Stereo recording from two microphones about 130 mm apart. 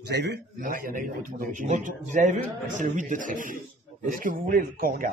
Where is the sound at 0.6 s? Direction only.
90° right.